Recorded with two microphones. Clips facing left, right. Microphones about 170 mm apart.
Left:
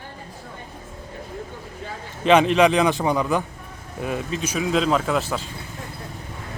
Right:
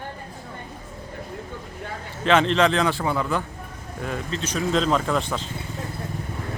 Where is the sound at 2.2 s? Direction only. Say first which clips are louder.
Left 3 dB; 15° left (ahead or behind).